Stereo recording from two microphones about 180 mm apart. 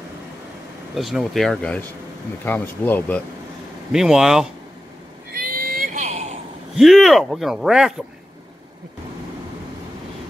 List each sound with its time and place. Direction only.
0.9 s speech: centre (ahead or behind)
3.9 s speech: centre (ahead or behind)
5.3 s a sound: 55° right (ahead or behind)
6.7 s speech: centre (ahead or behind)